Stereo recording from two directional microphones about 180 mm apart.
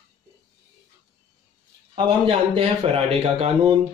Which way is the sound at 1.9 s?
30° right (ahead or behind).